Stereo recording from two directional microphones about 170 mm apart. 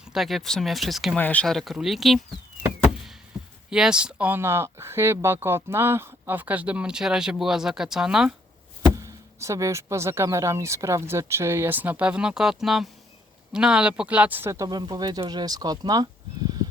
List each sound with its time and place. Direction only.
0.0 s speech: centre (ahead or behind)
2.9 s a sound: centre (ahead or behind)
3.7 s speech: 5° right (ahead or behind)
9.0 s speech: 20° right (ahead or behind)